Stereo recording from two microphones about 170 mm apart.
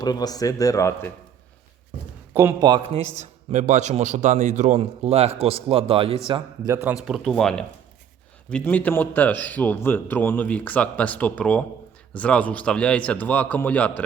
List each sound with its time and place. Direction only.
0.0 s a man's voice: 25° left (ahead or behind)
2.3 s a man's voice: 15° right (ahead or behind)
2.6 s speech: 25° right (ahead or behind)
3.2 s a man's voice: 45° right (ahead or behind)
7.0 s a man's voice: centre (ahead or behind)